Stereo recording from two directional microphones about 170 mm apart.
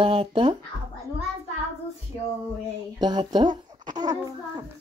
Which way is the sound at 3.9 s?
25° right (ahead or behind).